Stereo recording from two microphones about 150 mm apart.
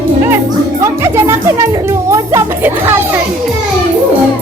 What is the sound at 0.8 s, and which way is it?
Music, 20° right (ahead or behind).